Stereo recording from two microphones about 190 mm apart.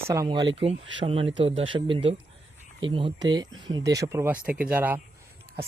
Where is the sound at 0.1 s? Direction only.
20° right (ahead or behind).